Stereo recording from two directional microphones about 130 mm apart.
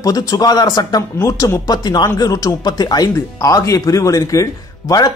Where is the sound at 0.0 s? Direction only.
30° left (ahead or behind).